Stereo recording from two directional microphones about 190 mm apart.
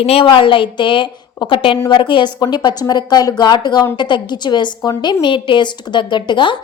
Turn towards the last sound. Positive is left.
turn(degrees=25)  # may be behind; listen again after turning